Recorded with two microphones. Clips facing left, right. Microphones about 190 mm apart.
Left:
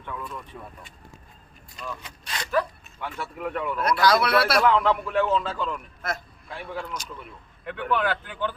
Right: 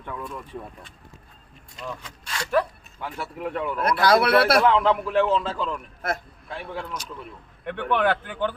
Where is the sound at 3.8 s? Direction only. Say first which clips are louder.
Right 2 dB; 55° right (ahead or behind).